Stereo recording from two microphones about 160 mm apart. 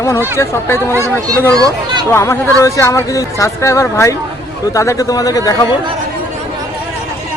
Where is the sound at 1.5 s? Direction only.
25° right (ahead or behind).